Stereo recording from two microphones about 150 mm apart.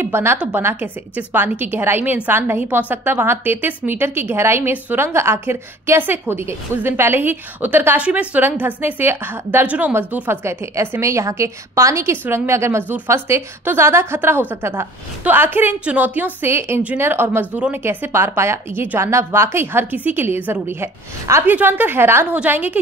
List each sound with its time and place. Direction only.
0.0 s a woman's voice: 15° right (ahead or behind)